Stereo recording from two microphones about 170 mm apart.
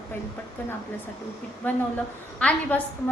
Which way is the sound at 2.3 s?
5° left (ahead or behind).